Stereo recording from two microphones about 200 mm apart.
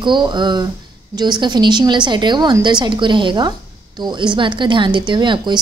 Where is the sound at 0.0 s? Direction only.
25° right (ahead or behind).